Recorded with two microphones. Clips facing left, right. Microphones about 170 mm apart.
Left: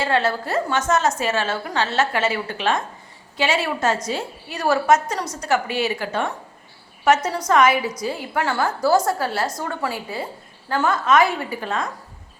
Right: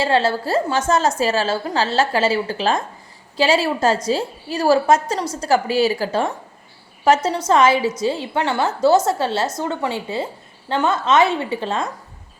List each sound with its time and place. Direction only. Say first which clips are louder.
0.0 s a woman's voice: right 3 dB; 30° right (ahead or behind)